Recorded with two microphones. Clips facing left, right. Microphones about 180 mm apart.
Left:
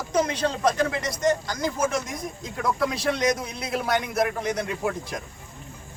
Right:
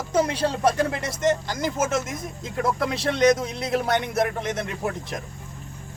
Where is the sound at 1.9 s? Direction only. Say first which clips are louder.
Right 2 dB; 5° right (ahead or behind).